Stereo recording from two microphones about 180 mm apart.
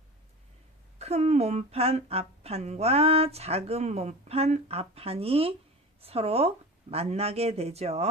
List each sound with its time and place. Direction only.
0.9 s a woman's voice: 35° right (ahead or behind)